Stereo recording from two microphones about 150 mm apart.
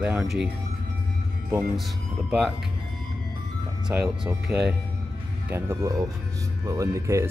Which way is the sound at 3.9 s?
10° right (ahead or behind).